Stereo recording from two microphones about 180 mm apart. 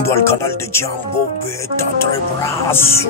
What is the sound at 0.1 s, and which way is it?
Speech, 15° left (ahead or behind).